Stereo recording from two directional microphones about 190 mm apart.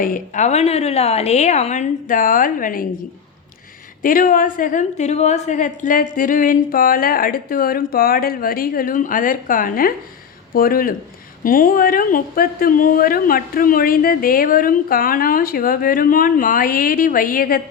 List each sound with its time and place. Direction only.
0.0 s a woman's voice: 45° left (ahead or behind)
4.0 s a woman's voice: 45° left (ahead or behind)